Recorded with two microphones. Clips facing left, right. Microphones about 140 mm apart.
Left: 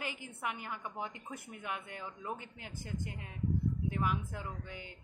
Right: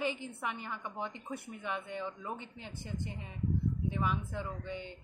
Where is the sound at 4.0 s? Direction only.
5° left (ahead or behind).